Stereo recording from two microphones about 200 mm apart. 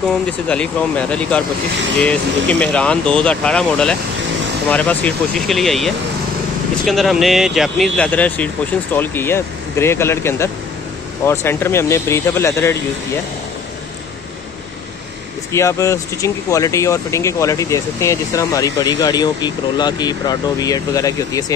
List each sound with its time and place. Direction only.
0.5 s speech: 5° left (ahead or behind)
15.5 s speech: 15° left (ahead or behind)